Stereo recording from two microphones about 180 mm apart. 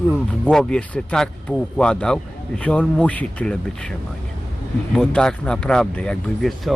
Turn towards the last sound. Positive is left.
turn(degrees=5)  # may be behind; listen again after turning